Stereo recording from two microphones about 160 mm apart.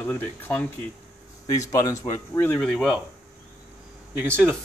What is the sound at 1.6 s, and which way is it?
Speech, 20° left (ahead or behind).